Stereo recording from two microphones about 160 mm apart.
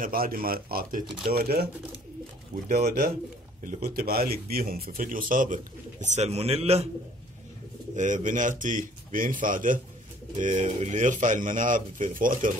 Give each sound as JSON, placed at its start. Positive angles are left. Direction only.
{"t": 0.0, "sound": "speech", "side_deg": -65}
{"t": 2.7, "sound": "speech", "side_deg": -70}
{"t": 7.9, "sound": "a man's voice", "side_deg": -50}